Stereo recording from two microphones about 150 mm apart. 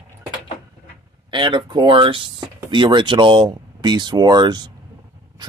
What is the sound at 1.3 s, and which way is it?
Speech, 30° right (ahead or behind).